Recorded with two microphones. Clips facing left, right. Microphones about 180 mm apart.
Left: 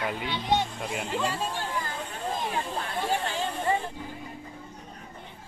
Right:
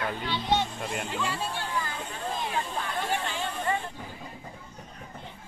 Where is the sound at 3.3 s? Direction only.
35° left (ahead or behind).